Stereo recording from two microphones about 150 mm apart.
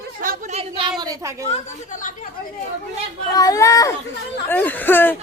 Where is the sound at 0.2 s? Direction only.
65° right (ahead or behind).